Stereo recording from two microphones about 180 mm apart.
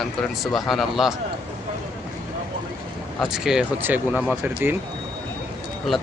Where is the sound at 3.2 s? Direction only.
5° right (ahead or behind).